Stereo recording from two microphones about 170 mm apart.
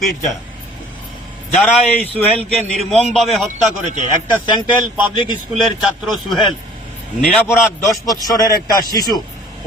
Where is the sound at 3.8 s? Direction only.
45° right (ahead or behind).